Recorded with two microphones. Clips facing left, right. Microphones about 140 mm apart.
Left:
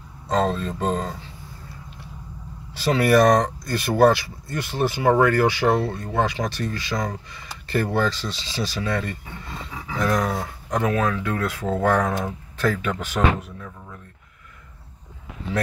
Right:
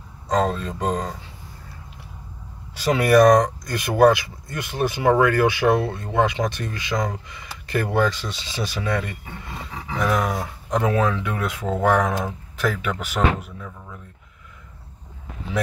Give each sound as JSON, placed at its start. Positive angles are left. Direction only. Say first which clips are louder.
{"t": 0.3, "sound": "speech", "louder": "even", "side_deg": -5}
{"t": 2.9, "sound": "speech", "louder": "right 2 dB", "side_deg": -15}
{"t": 10.7, "sound": "speech", "louder": "right 1 dB", "side_deg": -25}